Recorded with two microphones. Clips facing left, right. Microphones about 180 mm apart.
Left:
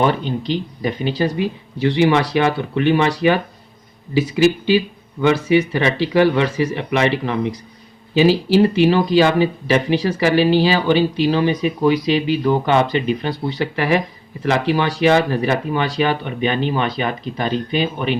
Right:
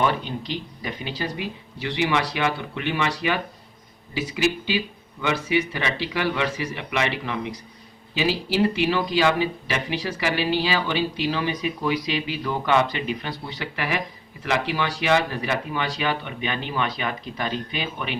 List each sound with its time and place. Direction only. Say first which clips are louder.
0.0 s speech: left 6 dB; 30° left (ahead or behind)